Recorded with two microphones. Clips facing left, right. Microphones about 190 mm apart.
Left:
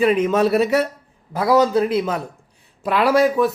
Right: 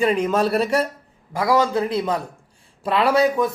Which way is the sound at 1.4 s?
20° left (ahead or behind).